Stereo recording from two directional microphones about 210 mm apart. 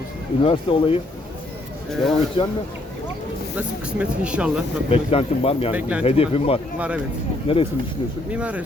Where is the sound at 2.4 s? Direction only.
25° left (ahead or behind).